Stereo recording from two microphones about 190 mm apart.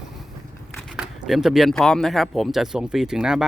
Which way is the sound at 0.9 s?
5° right (ahead or behind).